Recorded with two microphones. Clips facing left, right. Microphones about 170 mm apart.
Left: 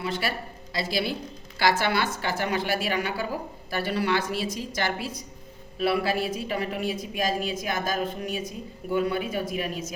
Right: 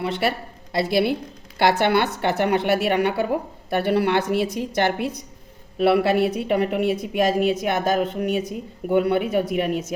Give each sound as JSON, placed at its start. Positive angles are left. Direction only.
{"t": 0.0, "sound": "a woman's voice", "side_deg": -65}